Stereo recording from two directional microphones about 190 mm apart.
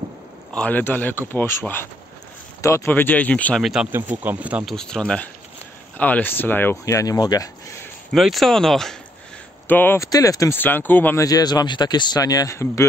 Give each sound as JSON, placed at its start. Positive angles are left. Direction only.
{"t": 0.6, "sound": "speech", "side_deg": 10}
{"t": 8.1, "sound": "speech", "side_deg": 0}